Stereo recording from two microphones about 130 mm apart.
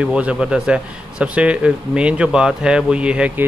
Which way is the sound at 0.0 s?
10° right (ahead or behind).